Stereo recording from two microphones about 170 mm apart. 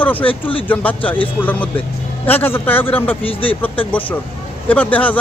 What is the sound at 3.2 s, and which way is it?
Speech, 30° left (ahead or behind).